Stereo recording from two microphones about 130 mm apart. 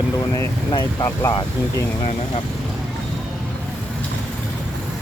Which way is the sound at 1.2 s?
25° left (ahead or behind).